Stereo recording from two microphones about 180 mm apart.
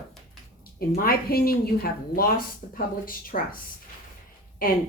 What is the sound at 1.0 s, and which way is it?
A woman's voice, 55° left (ahead or behind).